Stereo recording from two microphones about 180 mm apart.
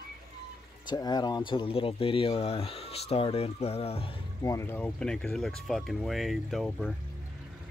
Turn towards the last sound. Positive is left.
turn(degrees=0)  # may be behind; listen again after turning